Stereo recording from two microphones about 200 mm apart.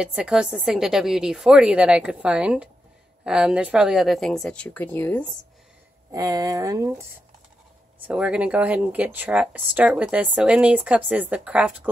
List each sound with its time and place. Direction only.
0.0 s a woman's voice: 5° right (ahead or behind)
6.1 s speech: 20° right (ahead or behind)
8.1 s speech: 5° right (ahead or behind)